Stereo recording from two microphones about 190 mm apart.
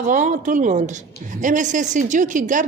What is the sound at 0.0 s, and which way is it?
A woman's voice, 40° right (ahead or behind).